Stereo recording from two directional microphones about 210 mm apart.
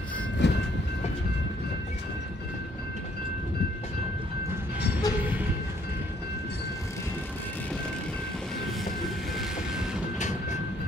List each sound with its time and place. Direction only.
0.4 s train: 55° left (ahead or behind)
5.1 s train: 15° left (ahead or behind)